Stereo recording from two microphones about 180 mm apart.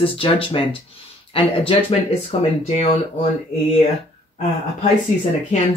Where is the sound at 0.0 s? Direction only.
30° left (ahead or behind).